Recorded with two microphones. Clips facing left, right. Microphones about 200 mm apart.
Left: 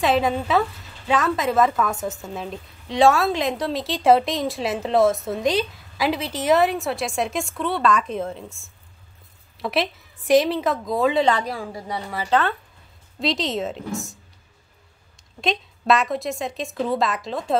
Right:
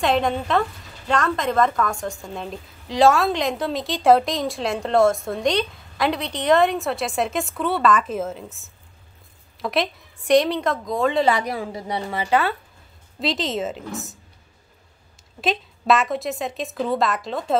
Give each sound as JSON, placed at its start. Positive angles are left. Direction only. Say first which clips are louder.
{"t": 0.0, "sound": "a woman's voice", "louder": "left 1 dB", "side_deg": 5}
{"t": 11.3, "sound": "a woman's voice", "louder": "right 2 dB", "side_deg": -20}
{"t": 12.3, "sound": "a woman's voice", "louder": "even", "side_deg": -10}
{"t": 15.4, "sound": "a woman's voice", "louder": "right 1 dB", "side_deg": 0}